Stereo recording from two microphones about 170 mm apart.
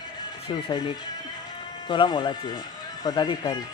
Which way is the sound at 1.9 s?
25° left (ahead or behind).